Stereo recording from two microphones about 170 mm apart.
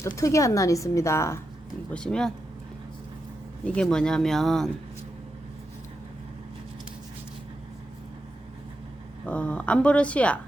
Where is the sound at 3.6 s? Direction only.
5° left (ahead or behind).